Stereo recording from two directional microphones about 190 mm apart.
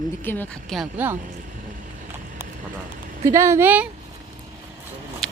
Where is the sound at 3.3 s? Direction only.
15° right (ahead or behind).